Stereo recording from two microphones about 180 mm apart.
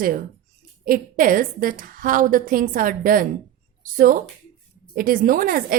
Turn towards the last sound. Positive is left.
turn(degrees=-50)  # may be behind; listen again after turning